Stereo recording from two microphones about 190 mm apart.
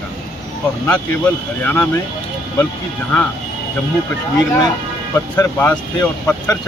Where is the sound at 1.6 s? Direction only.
10° left (ahead or behind).